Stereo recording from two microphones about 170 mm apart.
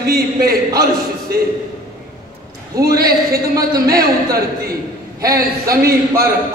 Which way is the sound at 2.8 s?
65° right (ahead or behind).